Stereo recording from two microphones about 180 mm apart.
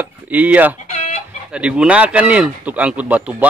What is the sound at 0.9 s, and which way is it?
Chicken, 40° left (ahead or behind).